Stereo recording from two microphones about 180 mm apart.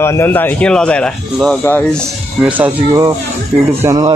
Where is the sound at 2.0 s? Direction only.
10° right (ahead or behind).